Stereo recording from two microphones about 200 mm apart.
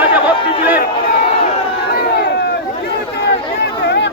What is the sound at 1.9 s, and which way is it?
Crowd, 55° left (ahead or behind).